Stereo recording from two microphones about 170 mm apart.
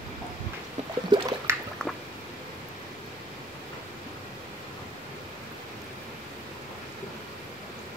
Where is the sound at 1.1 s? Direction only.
25° right (ahead or behind).